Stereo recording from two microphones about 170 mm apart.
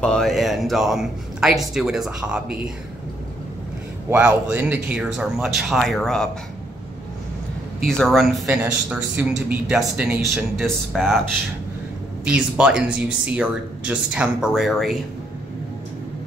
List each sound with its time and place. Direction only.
0.0 s speech: 5° left (ahead or behind)
4.1 s speech: 10° right (ahead or behind)
7.8 s speech: centre (ahead or behind)
12.3 s speech: 5° right (ahead or behind)